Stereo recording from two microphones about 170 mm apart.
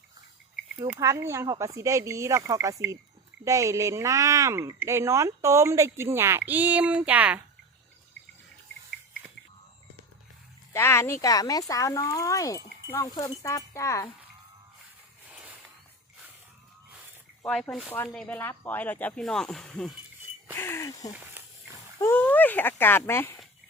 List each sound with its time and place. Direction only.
0.9 s speech: 20° right (ahead or behind)
10.7 s speech: 15° left (ahead or behind)
15.3 s a sound: 10° right (ahead or behind)
17.4 s speech: 5° left (ahead or behind)
20.6 s speech: 15° left (ahead or behind)
21.4 s dog: 15° right (ahead or behind)
22.0 s speech: 10° left (ahead or behind)